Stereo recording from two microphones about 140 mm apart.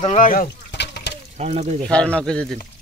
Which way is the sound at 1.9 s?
10° left (ahead or behind).